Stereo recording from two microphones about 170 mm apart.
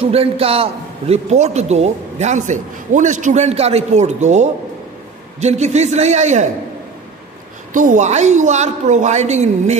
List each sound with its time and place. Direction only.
0.0 s a man's voice: 35° right (ahead or behind)
7.7 s a woman's voice: 50° right (ahead or behind)